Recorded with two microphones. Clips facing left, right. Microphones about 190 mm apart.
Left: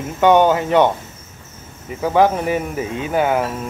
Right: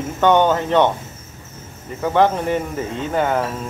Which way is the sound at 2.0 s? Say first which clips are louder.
Left 1 dB; 10° left (ahead or behind).